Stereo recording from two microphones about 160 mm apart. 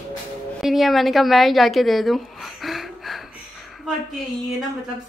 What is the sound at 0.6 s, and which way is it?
A woman's voice, centre (ahead or behind).